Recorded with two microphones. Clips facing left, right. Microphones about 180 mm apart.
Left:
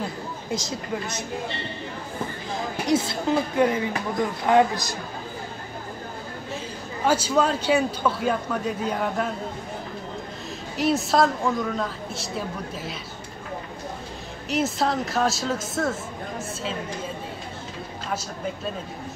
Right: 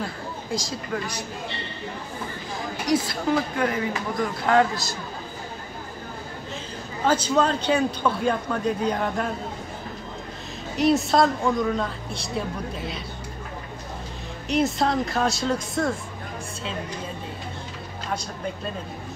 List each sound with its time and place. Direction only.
0.5 s speech: 20° left (ahead or behind)
2.9 s a man's voice: 25° left (ahead or behind)
7.1 s speech: 10° left (ahead or behind)
10.8 s speech: centre (ahead or behind)
14.5 s speech: 5° left (ahead or behind)